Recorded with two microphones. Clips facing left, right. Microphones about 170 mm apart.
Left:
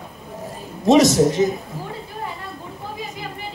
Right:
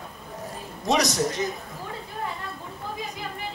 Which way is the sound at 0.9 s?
Centre (ahead or behind).